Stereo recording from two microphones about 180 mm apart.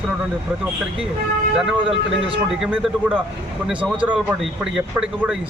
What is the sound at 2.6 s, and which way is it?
A man's voice, 5° right (ahead or behind).